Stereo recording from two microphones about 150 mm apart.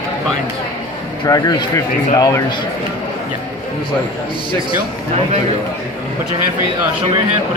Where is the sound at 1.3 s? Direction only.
25° left (ahead or behind).